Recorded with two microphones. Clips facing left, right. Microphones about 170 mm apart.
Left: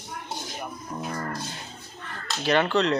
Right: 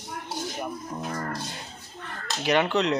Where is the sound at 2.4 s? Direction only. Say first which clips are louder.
Left 1 dB; 15° right (ahead or behind).